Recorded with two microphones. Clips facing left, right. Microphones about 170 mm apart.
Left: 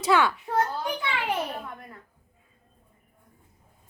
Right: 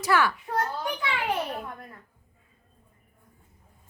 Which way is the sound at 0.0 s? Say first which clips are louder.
Left 2 dB; 20° left (ahead or behind).